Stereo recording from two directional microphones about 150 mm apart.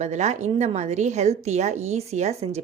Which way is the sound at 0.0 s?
50° right (ahead or behind).